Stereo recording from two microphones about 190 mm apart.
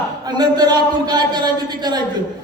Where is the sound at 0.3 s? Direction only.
20° right (ahead or behind).